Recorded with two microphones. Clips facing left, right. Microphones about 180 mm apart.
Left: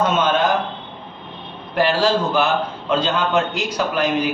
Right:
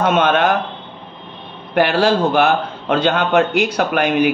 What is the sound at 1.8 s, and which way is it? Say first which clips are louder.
A man's voice: right 3 dB; 60° right (ahead or behind).